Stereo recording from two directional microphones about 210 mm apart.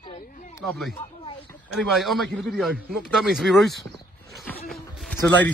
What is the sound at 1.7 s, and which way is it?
A man's voice, centre (ahead or behind).